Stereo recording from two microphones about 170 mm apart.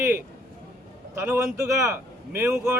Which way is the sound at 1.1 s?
15° right (ahead or behind).